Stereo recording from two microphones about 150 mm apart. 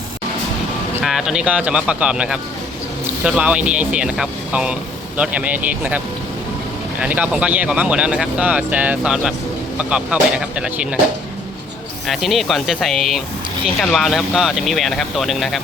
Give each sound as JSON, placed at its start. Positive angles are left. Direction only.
{"t": 1.0, "sound": "speech", "side_deg": -5}
{"t": 7.0, "sound": "speech", "side_deg": -10}
{"t": 12.0, "sound": "speech", "side_deg": 0}